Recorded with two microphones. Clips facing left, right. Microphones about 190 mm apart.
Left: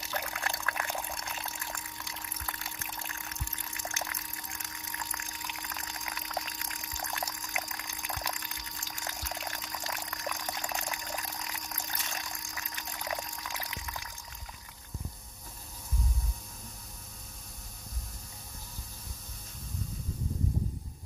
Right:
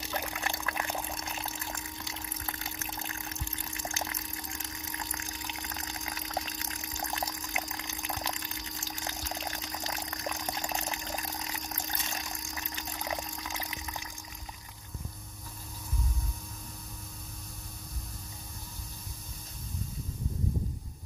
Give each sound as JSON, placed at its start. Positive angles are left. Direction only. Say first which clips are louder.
{"t": 0.1, "sound": "pour", "louder": "right 1 dB", "side_deg": -20}